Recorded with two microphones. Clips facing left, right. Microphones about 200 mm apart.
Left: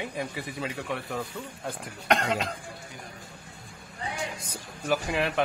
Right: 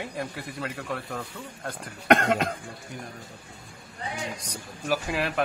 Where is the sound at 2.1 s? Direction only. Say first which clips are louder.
Right 5 dB; 50° right (ahead or behind).